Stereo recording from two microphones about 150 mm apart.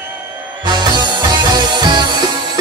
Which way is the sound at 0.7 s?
30° right (ahead or behind).